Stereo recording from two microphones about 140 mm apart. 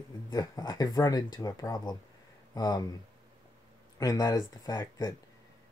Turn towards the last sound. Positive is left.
turn(degrees=25)  # may be behind; listen again after turning